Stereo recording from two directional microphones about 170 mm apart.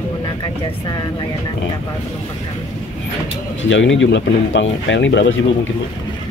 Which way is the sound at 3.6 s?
90° left.